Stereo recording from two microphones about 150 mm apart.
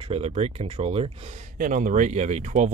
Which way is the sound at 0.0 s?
45° right (ahead or behind).